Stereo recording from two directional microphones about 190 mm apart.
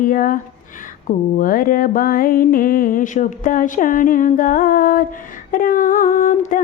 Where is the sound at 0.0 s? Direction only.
45° left (ahead or behind).